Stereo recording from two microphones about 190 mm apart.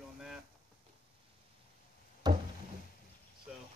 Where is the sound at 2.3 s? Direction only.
20° right (ahead or behind).